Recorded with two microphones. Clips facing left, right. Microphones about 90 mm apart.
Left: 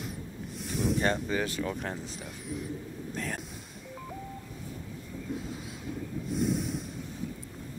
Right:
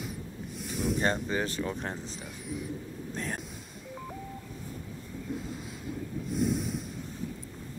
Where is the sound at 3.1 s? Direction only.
40° right (ahead or behind).